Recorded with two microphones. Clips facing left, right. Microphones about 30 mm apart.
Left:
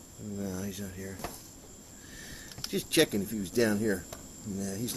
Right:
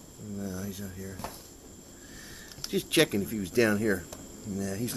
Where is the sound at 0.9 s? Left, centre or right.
Centre.